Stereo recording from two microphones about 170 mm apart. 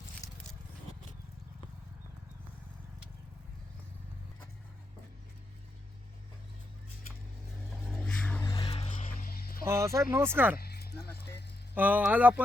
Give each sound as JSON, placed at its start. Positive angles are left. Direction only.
{"t": 7.7, "sound": "vehicle", "side_deg": 5}
{"t": 8.4, "sound": "music", "side_deg": 20}
{"t": 8.7, "sound": "music", "side_deg": 40}
{"t": 9.6, "sound": "speech", "side_deg": -15}
{"t": 10.6, "sound": "music", "side_deg": 70}
{"t": 11.7, "sound": "speech", "side_deg": -10}